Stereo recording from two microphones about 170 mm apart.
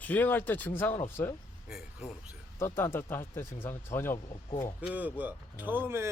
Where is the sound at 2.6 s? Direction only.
15° left (ahead or behind).